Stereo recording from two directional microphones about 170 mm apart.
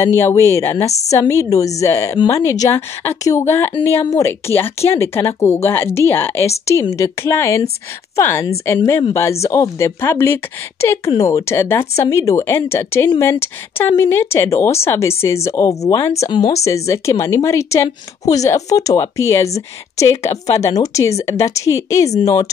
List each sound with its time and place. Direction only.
0.0 s a woman's voice: 15° left (ahead or behind)
20.2 s speech: 40° left (ahead or behind)
20.6 s a woman's voice: 20° left (ahead or behind)